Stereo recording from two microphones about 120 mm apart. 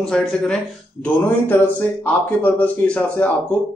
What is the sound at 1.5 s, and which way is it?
Speech, 15° left (ahead or behind).